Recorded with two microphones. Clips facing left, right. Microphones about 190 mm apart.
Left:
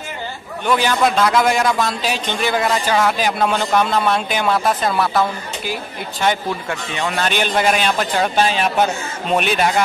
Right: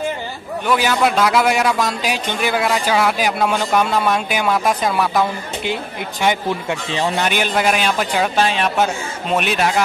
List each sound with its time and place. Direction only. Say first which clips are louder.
0.7 s a man's voice: even; 5° right (ahead or behind)
6.9 s a man's voice: right 2 dB; 30° right (ahead or behind)
7.2 s a man's voice: even; 5° right (ahead or behind)